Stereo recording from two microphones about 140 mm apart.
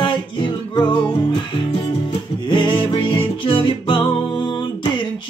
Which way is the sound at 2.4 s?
35° left (ahead or behind).